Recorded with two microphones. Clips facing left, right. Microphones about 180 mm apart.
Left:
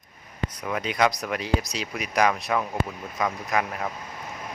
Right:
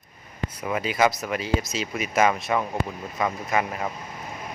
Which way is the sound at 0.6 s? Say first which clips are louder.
Right 2 dB; 5° right (ahead or behind).